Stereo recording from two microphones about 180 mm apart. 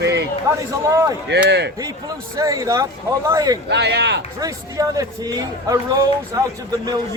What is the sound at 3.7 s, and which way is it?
Speech, 70° right (ahead or behind).